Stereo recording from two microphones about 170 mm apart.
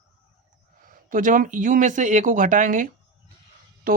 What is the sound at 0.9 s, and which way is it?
Speech, 50° right (ahead or behind).